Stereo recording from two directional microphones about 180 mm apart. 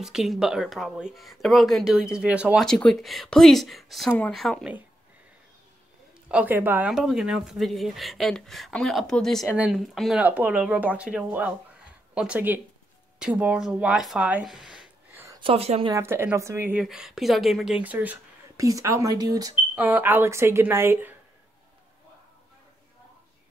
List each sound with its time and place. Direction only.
0.0 s speech: centre (ahead or behind)
6.2 s speech: 5° right (ahead or behind)
15.4 s a woman's voice: 35° right (ahead or behind)
15.9 s speech: 15° right (ahead or behind)
16.8 s speech: centre (ahead or behind); by 19.5 s 20° right (ahead or behind)
19.7 s speech: 10° right (ahead or behind)